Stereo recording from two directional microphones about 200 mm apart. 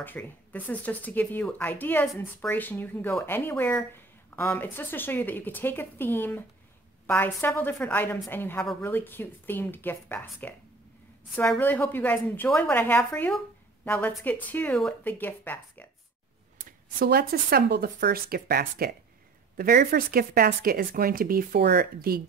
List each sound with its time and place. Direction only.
0.0 s speech: 10° left (ahead or behind)
16.5 s speech: 45° right (ahead or behind)